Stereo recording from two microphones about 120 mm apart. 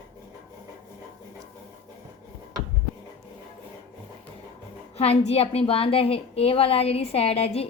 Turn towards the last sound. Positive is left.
turn(degrees=60)  # may be behind; listen again after turning